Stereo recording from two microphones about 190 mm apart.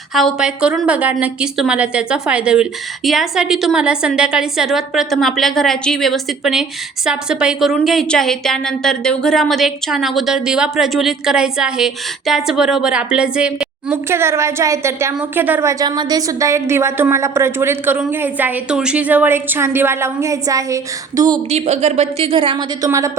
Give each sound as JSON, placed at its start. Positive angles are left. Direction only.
{"t": 0.1, "sound": "a woman's voice", "side_deg": 0}
{"t": 21.5, "sound": "a woman's voice", "side_deg": -35}
{"t": 22.9, "sound": "speech", "side_deg": -15}